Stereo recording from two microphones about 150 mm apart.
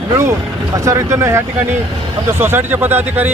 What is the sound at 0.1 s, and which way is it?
Speech, 20° right (ahead or behind).